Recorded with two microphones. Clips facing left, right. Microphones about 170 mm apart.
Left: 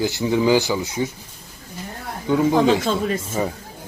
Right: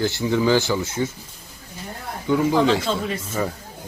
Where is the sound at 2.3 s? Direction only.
20° left (ahead or behind).